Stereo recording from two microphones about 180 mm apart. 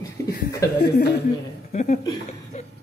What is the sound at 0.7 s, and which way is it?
Speech, 70° left (ahead or behind).